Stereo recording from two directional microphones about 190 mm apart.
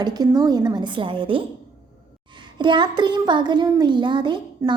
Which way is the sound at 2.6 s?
25° right (ahead or behind).